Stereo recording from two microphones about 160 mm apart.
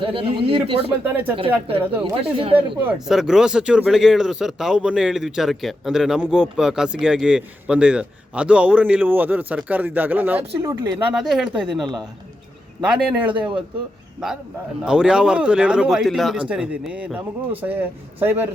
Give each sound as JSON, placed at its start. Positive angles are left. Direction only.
{"t": 0.0, "sound": "speech", "side_deg": -35}
{"t": 1.0, "sound": "speech", "side_deg": -10}
{"t": 1.4, "sound": "speech", "side_deg": -35}
{"t": 1.8, "sound": "speech", "side_deg": -10}
{"t": 2.1, "sound": "speech", "side_deg": -35}
{"t": 2.8, "sound": "speech", "side_deg": -5}
{"t": 11.1, "sound": "speech", "side_deg": -5}
{"t": 12.9, "sound": "speech", "side_deg": -10}
{"t": 14.8, "sound": "speech", "side_deg": -5}